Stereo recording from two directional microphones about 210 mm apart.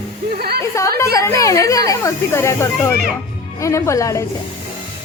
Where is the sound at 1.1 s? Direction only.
15° left (ahead or behind).